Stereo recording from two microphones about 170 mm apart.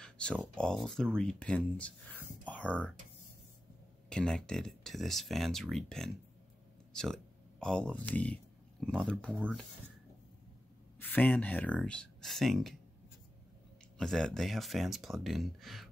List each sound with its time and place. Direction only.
0.0 s speech: 5° left (ahead or behind)
4.1 s speech: 5° left (ahead or behind)
11.0 s speech: 10° left (ahead or behind)
13.9 s speech: 5° left (ahead or behind)